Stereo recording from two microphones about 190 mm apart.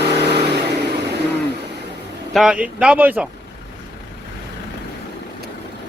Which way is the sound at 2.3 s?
5° right (ahead or behind).